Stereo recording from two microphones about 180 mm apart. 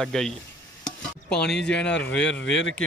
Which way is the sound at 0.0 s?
5° left (ahead or behind).